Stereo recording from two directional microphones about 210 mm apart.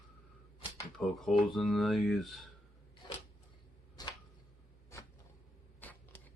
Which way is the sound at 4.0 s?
20° left (ahead or behind).